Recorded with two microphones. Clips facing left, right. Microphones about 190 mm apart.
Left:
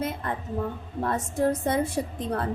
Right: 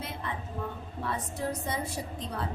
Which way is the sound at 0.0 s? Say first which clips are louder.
Left 7 dB; 50° left (ahead or behind).